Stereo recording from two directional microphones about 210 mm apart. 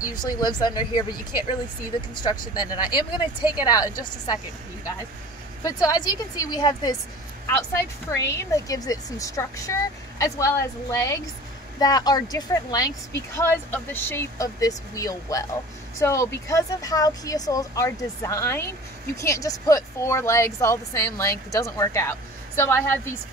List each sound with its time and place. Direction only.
0.0 s speech: 20° left (ahead or behind)
5.6 s speech: 15° left (ahead or behind)